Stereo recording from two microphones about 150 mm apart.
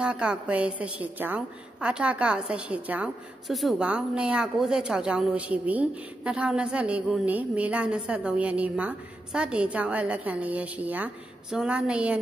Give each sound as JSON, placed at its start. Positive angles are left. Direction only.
{"t": 0.0, "sound": "a woman's voice", "side_deg": -5}